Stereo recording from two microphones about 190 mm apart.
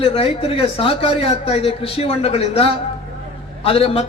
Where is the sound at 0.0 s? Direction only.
30° left (ahead or behind).